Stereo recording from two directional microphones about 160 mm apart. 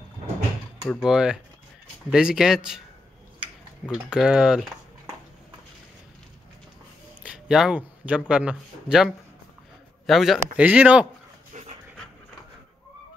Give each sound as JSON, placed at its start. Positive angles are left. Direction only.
{"t": 1.0, "sound": "speech", "side_deg": -5}
{"t": 3.9, "sound": "speech", "side_deg": -5}
{"t": 7.2, "sound": "a man's voice", "side_deg": -5}
{"t": 11.5, "sound": "dog", "side_deg": -45}